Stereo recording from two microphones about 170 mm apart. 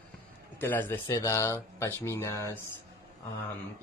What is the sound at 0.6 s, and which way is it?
Speech, 10° left (ahead or behind).